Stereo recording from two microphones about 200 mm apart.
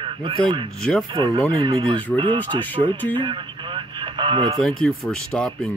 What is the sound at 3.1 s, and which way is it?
Radio, 25° right (ahead or behind).